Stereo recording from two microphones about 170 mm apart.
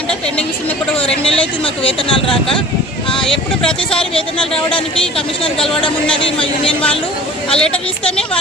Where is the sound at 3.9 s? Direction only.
5° left (ahead or behind).